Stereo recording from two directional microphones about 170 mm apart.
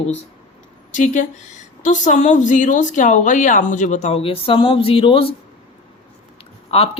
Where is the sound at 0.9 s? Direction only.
45° left (ahead or behind).